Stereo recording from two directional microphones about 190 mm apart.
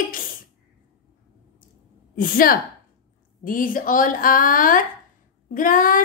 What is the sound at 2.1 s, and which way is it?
A woman's voice, 45° left (ahead or behind).